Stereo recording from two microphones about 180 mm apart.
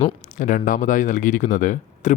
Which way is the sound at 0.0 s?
45° left (ahead or behind).